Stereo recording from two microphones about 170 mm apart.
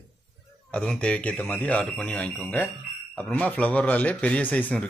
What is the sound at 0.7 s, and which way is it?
A man's voice, 5° left (ahead or behind).